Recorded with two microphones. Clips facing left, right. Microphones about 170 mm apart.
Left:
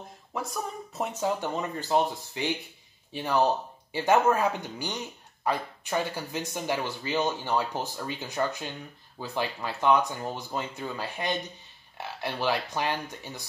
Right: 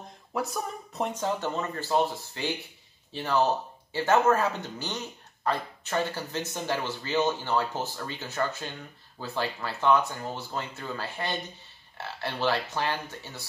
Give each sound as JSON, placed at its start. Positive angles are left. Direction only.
{"t": 0.3, "sound": "speech", "side_deg": 0}